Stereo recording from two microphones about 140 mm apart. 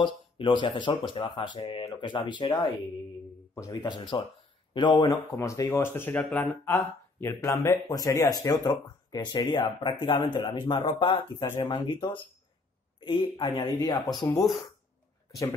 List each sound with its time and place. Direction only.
0.0 s speech: 35° left (ahead or behind)
11.4 s speech: 15° left (ahead or behind)
11.7 s speech: 40° left (ahead or behind)
13.6 s speech: 25° left (ahead or behind)
14.4 s speech: centre (ahead or behind)